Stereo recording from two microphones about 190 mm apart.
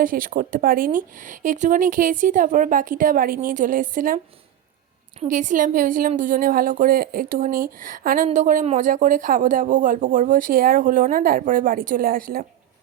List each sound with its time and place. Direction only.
0.0 s a woman's voice: 45° right (ahead or behind)
5.3 s a woman's voice: 40° right (ahead or behind)